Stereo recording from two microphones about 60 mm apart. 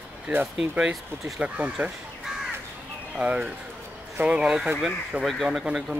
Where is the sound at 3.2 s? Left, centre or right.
Centre.